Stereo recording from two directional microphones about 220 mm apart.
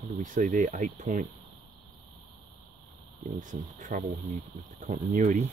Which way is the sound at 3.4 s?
35° right (ahead or behind).